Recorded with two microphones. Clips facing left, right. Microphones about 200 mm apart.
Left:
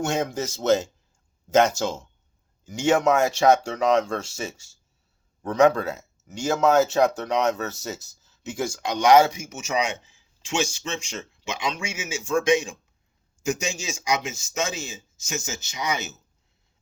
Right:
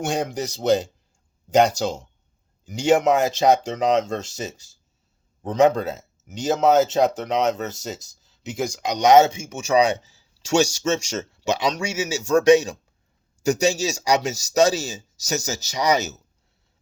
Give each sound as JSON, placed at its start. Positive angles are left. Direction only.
{"t": 0.0, "sound": "speech", "side_deg": -15}